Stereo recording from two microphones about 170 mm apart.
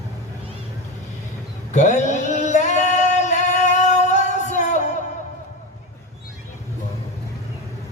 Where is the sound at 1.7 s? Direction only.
45° left (ahead or behind).